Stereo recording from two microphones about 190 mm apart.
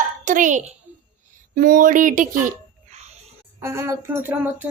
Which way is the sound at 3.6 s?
15° right (ahead or behind).